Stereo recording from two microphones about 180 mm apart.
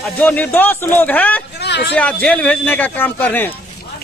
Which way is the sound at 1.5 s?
70° left (ahead or behind).